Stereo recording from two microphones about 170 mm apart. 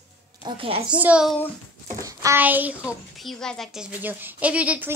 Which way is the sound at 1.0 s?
5° right (ahead or behind).